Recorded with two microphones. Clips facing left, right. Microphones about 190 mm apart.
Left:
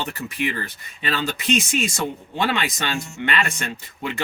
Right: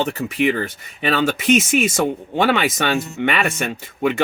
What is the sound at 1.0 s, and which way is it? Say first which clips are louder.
Speech: right 7 dB; 65° right (ahead or behind).